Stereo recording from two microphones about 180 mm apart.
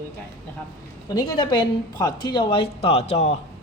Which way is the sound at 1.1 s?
25° left (ahead or behind).